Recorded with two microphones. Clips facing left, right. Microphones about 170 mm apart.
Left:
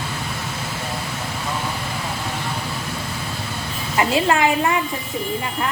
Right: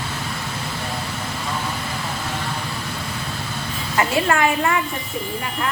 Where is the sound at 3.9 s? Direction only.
20° left (ahead or behind).